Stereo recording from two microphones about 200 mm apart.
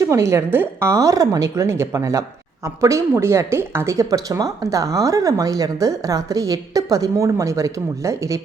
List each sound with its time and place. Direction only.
0.0 s a woman's voice: 15° right (ahead or behind)